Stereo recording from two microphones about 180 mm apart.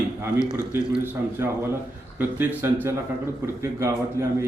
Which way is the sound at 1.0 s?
15° right (ahead or behind).